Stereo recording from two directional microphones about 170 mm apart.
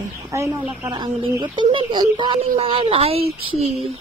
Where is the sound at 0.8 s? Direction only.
20° right (ahead or behind); by 3.7 s 40° right (ahead or behind).